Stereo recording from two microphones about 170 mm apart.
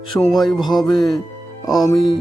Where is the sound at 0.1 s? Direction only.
Centre (ahead or behind).